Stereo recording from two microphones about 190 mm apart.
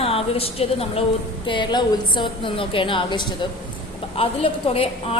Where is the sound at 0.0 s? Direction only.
30° left (ahead or behind).